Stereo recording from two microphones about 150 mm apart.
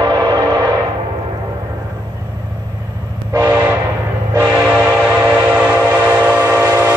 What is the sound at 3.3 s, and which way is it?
Train, 20° right (ahead or behind).